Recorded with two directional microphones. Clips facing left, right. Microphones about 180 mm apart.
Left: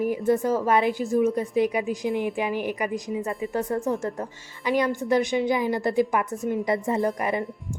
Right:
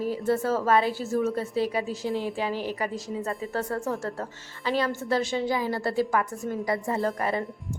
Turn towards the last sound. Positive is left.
turn(degrees=15)  # may be behind; listen again after turning